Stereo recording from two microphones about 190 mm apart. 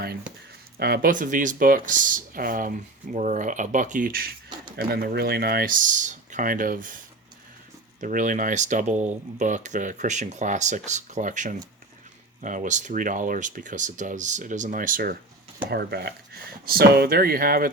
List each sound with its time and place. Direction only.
0.8 s speech: 55° right (ahead or behind)
8.0 s speech: 40° right (ahead or behind)
15.7 s speech: 60° right (ahead or behind)